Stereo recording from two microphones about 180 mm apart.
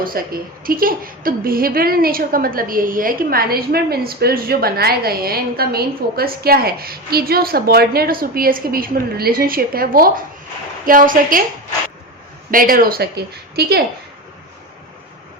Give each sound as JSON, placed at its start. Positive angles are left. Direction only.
{"t": 0.0, "sound": "a woman's voice", "side_deg": -55}
{"t": 12.5, "sound": "a woman's voice", "side_deg": -50}